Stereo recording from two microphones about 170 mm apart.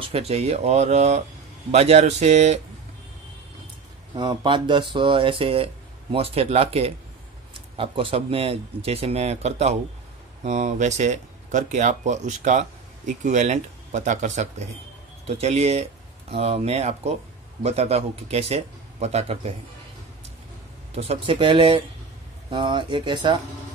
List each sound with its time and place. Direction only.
0.0 s speech: 35° right (ahead or behind)
4.1 s speech: 25° right (ahead or behind)
20.9 s speech: 35° right (ahead or behind)